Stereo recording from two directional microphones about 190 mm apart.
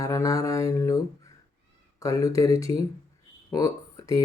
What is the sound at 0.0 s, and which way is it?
Speech, 15° left (ahead or behind).